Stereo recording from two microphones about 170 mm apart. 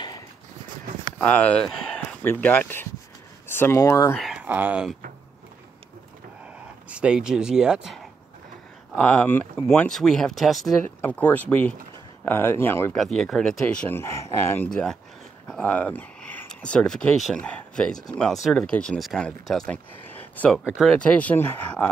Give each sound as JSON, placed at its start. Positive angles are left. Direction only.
{"t": 1.1, "sound": "speech", "side_deg": 10}
{"t": 4.2, "sound": "speech", "side_deg": -5}
{"t": 6.4, "sound": "a sound", "side_deg": -5}
{"t": 8.9, "sound": "speech", "side_deg": 10}
{"t": 12.9, "sound": "speech", "side_deg": 0}
{"t": 14.7, "sound": "speech", "side_deg": 5}
{"t": 20.1, "sound": "a sound", "side_deg": 10}
{"t": 20.6, "sound": "speech", "side_deg": 0}